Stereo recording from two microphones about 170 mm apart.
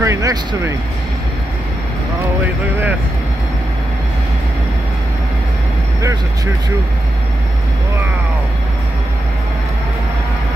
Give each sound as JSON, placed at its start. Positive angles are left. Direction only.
{"t": 0.0, "sound": "speech", "side_deg": -20}
{"t": 2.4, "sound": "speech", "side_deg": -10}